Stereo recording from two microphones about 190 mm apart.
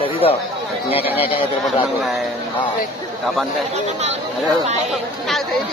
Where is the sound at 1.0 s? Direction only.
10° right (ahead or behind).